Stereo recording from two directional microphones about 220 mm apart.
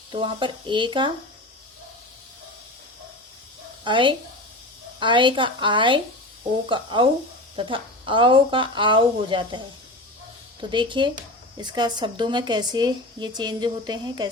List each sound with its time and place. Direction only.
0.1 s a woman's voice: 20° right (ahead or behind)
3.8 s a woman's voice: 20° right (ahead or behind)
10.6 s a woman's voice: 20° right (ahead or behind)